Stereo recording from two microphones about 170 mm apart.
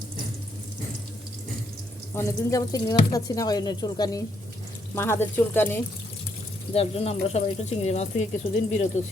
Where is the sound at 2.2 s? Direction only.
20° left (ahead or behind).